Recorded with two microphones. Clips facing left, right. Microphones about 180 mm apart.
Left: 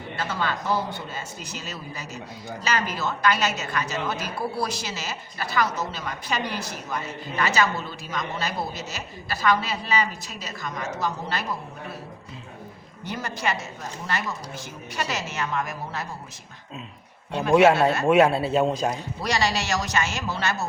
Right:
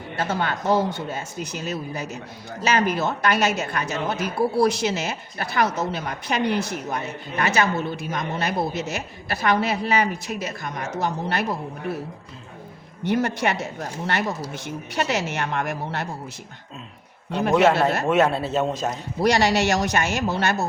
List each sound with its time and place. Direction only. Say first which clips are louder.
0.2 s a man's voice: right 3 dB; 50° right (ahead or behind)
13.1 s a man's voice: right 7 dB; 65° right (ahead or behind)
17.3 s a man's voice: left 1 dB; centre (ahead or behind)
19.2 s a man's voice: right 7 dB; 60° right (ahead or behind)